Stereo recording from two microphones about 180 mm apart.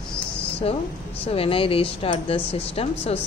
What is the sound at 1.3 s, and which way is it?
Speech, 30° left (ahead or behind).